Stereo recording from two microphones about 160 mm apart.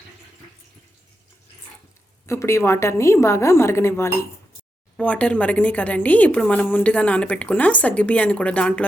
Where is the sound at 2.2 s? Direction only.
15° left (ahead or behind).